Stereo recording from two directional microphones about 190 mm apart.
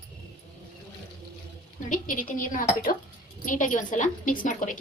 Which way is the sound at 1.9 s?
45° left (ahead or behind).